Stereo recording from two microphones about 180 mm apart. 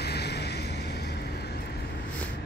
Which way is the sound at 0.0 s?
65° left (ahead or behind).